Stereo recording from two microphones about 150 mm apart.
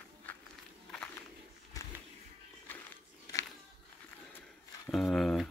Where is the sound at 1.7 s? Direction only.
25° left (ahead or behind).